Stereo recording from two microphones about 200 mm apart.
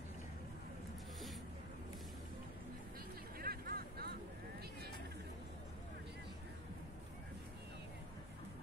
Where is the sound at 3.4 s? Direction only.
50° right (ahead or behind).